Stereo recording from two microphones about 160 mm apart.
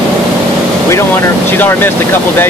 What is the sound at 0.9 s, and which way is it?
Speech, 15° left (ahead or behind).